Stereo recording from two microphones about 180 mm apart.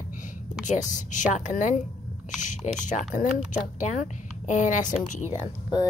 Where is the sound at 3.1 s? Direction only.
45° left (ahead or behind).